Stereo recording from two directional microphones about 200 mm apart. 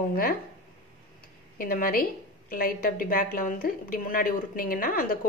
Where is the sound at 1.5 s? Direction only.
45° left (ahead or behind).